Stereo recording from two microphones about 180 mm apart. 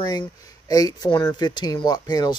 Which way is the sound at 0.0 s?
20° left (ahead or behind).